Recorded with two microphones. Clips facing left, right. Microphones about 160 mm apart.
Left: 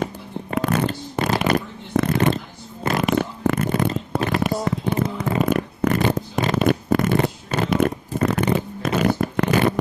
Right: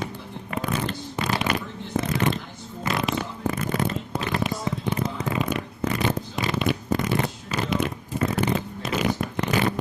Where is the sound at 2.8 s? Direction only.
55° left (ahead or behind).